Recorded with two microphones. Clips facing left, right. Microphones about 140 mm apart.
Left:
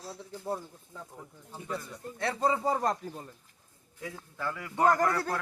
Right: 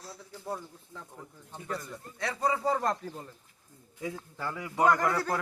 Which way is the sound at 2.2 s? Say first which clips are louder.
Left 2 dB; 25° left (ahead or behind).